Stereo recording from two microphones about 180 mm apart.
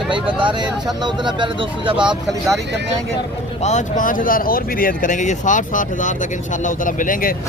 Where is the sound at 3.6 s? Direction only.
45° left (ahead or behind).